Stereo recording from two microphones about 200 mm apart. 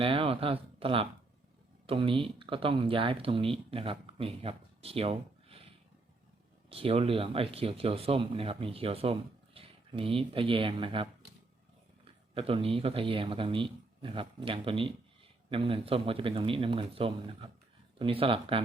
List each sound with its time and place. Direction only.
0.0 s speech: 30° right (ahead or behind)
6.7 s speech: 25° right (ahead or behind)